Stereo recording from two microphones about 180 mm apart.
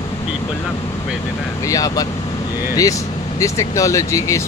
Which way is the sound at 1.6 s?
20° left (ahead or behind).